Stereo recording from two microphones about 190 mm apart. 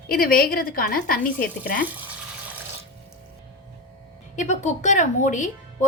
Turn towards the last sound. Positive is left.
turn(degrees=40)  # may be behind; listen again after turning